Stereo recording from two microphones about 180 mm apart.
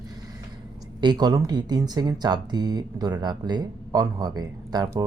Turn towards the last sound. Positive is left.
turn(degrees=-20)  # may be behind; listen again after turning